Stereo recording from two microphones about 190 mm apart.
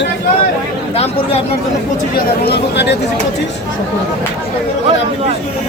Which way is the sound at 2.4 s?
60° left (ahead or behind).